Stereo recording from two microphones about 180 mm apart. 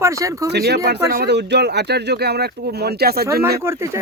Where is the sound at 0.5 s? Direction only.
65° right (ahead or behind).